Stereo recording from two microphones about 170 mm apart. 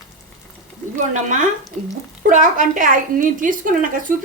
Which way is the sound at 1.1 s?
45° right (ahead or behind).